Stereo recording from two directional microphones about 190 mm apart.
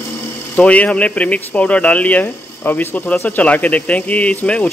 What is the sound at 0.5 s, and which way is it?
Speech, 5° left (ahead or behind).